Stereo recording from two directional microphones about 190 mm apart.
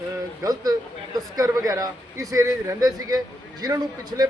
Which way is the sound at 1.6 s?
20° right (ahead or behind).